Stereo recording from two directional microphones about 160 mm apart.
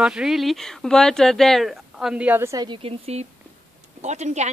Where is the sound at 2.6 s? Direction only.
40° right (ahead or behind).